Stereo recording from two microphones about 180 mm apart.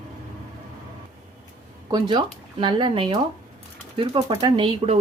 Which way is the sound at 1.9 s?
25° right (ahead or behind).